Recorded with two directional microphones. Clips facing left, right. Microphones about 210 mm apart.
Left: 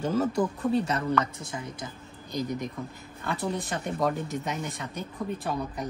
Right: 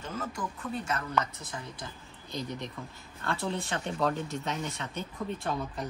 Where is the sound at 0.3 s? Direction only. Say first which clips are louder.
Left 10 dB; 35° left (ahead or behind).